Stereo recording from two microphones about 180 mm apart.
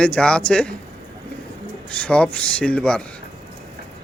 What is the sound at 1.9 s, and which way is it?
Speech, 5° left (ahead or behind).